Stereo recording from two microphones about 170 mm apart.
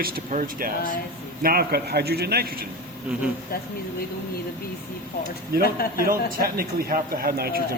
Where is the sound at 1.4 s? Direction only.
65° right (ahead or behind).